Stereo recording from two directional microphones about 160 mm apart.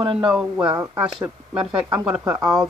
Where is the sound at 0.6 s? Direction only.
25° right (ahead or behind).